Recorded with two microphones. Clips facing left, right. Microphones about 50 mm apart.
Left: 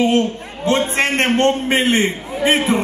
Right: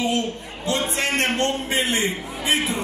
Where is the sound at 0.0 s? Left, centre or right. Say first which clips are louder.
Left 7 dB; left.